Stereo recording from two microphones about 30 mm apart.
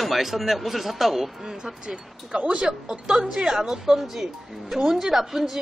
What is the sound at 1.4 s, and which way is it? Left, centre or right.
Speech, centre.